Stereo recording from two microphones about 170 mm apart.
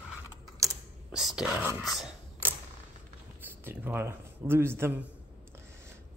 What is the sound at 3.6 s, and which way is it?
Speech, 10° right (ahead or behind).